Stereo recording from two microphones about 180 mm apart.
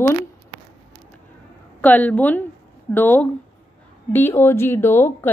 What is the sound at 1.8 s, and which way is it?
Speech, 10° left (ahead or behind).